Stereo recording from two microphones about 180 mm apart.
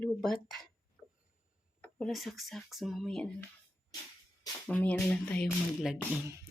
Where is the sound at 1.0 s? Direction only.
5° left (ahead or behind).